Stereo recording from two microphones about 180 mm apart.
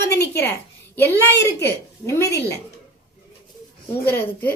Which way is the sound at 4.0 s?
10° left (ahead or behind).